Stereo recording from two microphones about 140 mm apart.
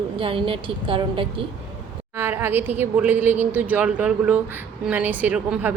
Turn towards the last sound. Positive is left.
turn(degrees=-10)  # may be behind; listen again after turning